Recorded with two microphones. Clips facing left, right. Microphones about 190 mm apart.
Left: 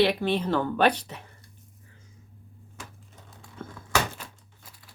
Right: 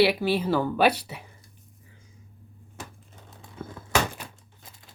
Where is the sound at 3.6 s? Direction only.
10° right (ahead or behind).